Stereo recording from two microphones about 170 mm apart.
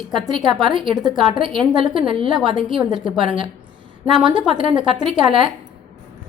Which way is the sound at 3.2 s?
30° right (ahead or behind).